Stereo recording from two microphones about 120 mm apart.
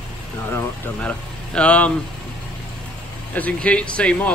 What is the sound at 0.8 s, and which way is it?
Speech, 10° left (ahead or behind).